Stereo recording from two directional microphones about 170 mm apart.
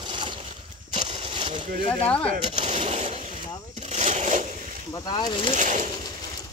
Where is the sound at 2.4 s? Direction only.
40° right (ahead or behind).